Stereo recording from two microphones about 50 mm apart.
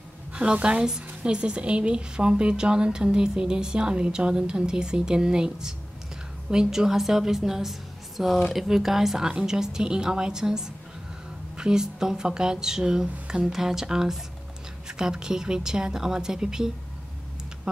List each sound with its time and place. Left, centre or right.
0.3 s a woman's voice: centre